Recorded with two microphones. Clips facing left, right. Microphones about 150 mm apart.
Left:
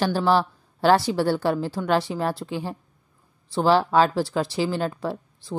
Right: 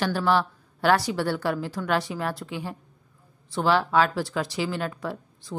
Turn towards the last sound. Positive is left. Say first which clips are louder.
# left 4 dB
turn(degrees=30)  # may be behind; listen again after turning